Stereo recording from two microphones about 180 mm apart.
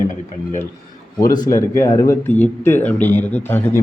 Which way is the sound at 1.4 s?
15° left (ahead or behind).